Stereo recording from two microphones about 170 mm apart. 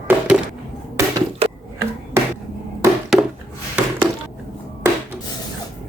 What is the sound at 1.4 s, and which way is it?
Chopping, 35° right (ahead or behind).